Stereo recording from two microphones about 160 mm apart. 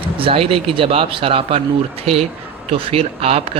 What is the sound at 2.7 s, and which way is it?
Speech, 35° right (ahead or behind).